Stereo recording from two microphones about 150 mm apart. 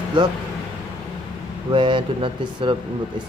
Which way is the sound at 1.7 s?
35° right (ahead or behind).